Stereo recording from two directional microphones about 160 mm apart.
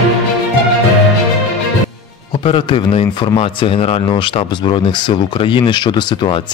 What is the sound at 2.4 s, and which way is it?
Speech, 35° left (ahead or behind).